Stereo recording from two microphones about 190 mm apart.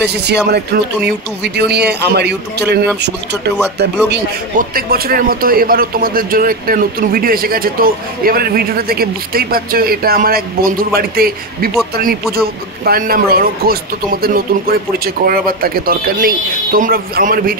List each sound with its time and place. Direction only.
0.0 s a man's voice: 60° right (ahead or behind)